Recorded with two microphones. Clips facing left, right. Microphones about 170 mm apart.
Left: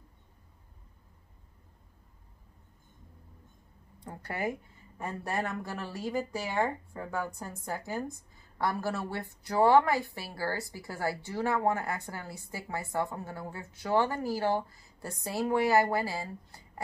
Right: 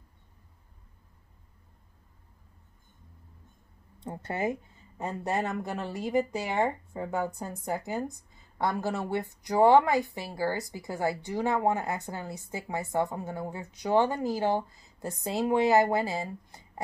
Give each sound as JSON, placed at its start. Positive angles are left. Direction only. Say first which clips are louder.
{"t": 4.0, "sound": "speech", "louder": "right 3 dB", "side_deg": -25}